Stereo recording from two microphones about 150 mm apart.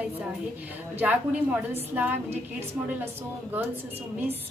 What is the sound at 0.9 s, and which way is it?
Speech, 10° right (ahead or behind).